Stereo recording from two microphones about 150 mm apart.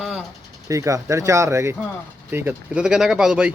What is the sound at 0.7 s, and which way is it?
Speech, 20° right (ahead or behind).